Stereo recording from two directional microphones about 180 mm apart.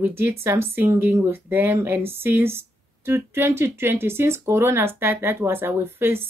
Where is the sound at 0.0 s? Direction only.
15° right (ahead or behind).